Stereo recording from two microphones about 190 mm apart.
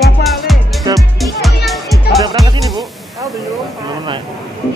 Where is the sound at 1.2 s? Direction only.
Centre (ahead or behind).